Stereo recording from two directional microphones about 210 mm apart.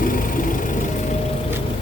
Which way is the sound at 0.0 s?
40° left (ahead or behind).